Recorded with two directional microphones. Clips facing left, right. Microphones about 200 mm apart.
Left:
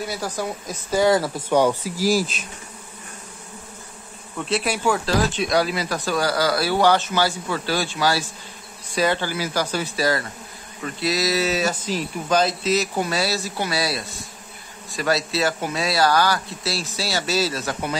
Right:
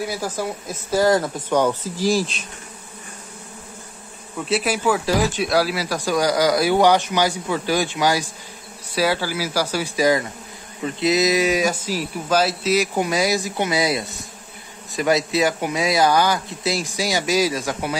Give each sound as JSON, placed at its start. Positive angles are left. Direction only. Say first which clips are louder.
{"t": 0.0, "sound": "speech", "louder": "right 2 dB", "side_deg": -10}
{"t": 4.4, "sound": "speech", "louder": "right 2 dB", "side_deg": -5}